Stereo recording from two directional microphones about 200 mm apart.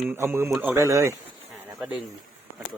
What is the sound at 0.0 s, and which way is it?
Speech, 5° right (ahead or behind).